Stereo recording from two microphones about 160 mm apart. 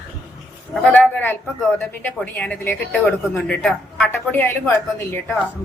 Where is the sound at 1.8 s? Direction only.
10° left (ahead or behind).